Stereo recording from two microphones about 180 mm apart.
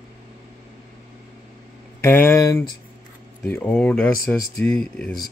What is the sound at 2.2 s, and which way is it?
Speech, 15° left (ahead or behind).